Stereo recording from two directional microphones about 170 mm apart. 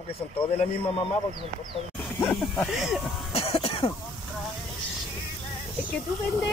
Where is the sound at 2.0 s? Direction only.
10° left (ahead or behind).